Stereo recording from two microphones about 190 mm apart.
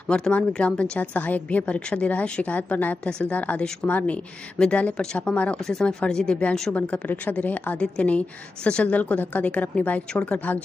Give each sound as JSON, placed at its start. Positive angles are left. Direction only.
{"t": 0.1, "sound": "a woman's voice", "side_deg": 5}